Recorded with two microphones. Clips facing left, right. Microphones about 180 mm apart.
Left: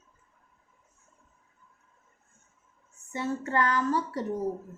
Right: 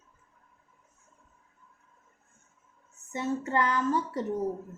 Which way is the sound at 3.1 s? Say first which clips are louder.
Right 1 dB; 20° right (ahead or behind).